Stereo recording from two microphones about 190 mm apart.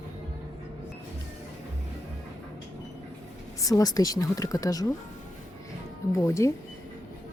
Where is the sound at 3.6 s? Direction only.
20° left (ahead or behind).